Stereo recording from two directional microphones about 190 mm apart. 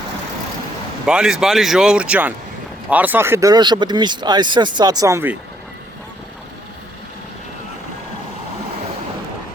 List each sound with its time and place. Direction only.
1.0 s speech: 5° right (ahead or behind)